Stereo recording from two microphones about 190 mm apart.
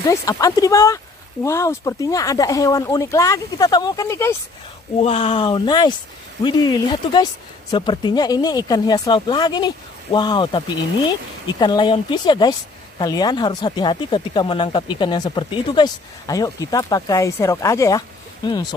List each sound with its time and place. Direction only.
0.0 s speech: 15° left (ahead or behind)
5.0 s speech: 30° left (ahead or behind)